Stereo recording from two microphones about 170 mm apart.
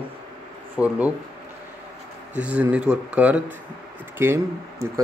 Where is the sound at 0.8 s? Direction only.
5° right (ahead or behind).